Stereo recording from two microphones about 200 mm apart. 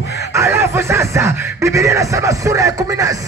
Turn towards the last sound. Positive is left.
turn(degrees=-15)  # may be behind; listen again after turning